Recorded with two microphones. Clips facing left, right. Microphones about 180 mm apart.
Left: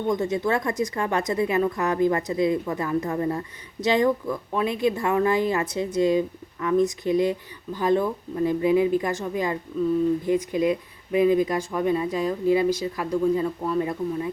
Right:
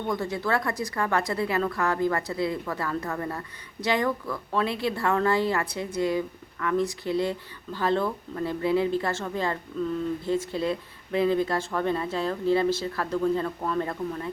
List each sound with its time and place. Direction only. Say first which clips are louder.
0.1 s a woman's voice: left 4 dB; 20° left (ahead or behind)